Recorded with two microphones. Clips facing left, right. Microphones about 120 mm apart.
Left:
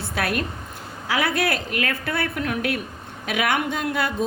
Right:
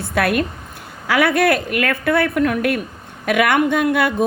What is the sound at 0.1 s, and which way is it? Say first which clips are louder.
A woman's voice: right 7 dB; 60° right (ahead or behind).